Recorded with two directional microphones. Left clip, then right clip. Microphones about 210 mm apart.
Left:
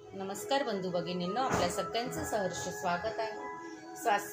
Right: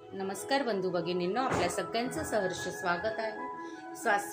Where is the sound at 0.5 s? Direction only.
40° right (ahead or behind).